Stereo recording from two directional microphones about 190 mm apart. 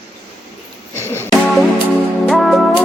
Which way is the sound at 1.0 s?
10° left (ahead or behind).